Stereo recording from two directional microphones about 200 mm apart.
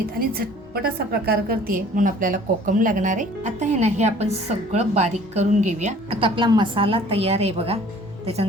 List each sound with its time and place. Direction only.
0.2 s a woman's voice: 50° right (ahead or behind); by 7.8 s 30° right (ahead or behind)